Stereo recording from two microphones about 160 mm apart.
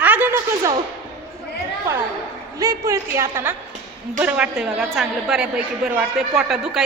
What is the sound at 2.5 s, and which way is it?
A woman's voice, 20° right (ahead or behind).